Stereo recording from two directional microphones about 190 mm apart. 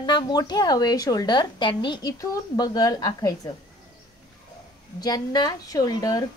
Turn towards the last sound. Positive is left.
turn(degrees=20)  # may be behind; listen again after turning